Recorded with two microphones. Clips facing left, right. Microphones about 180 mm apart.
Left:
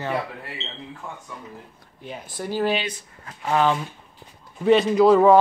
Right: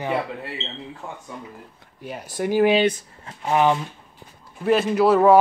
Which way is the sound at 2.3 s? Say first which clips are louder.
Right 6 dB; 15° right (ahead or behind).